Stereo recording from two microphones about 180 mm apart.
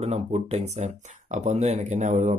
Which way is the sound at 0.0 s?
35° right (ahead or behind).